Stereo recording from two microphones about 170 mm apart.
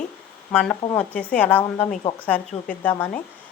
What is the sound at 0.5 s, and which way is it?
A woman's voice, 10° left (ahead or behind).